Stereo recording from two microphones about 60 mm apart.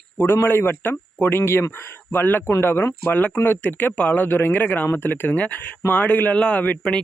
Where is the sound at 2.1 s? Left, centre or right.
Left.